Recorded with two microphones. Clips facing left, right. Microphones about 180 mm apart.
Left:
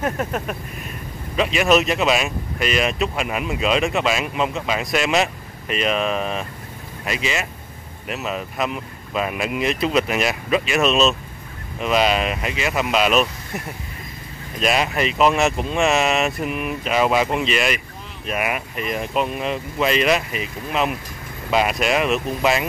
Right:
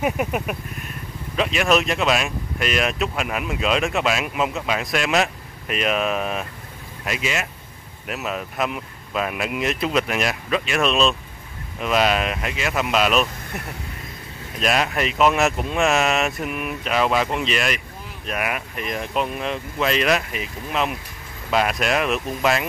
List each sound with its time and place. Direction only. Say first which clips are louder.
0.0 s speech: right 1 dB; 10° right (ahead or behind)
1.3 s speech: left 2 dB; centre (ahead or behind)
14.6 s speech: left 1 dB; centre (ahead or behind)